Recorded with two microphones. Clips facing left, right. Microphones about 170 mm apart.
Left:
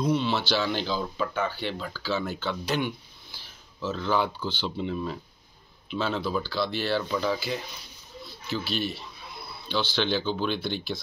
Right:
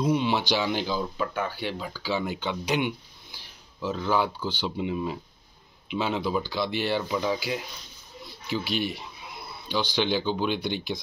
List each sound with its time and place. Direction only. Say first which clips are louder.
0.0 s speech: right 1 dB; 10° right (ahead or behind)